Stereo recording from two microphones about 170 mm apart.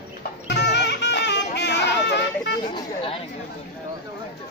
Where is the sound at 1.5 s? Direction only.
85° left.